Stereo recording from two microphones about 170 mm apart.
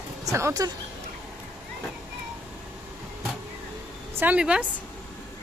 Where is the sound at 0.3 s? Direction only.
20° right (ahead or behind).